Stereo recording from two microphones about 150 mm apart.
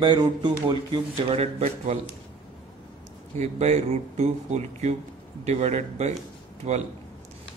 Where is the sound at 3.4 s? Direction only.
50° right (ahead or behind).